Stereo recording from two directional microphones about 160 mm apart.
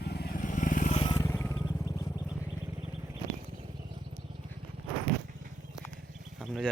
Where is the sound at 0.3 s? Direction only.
55° left (ahead or behind).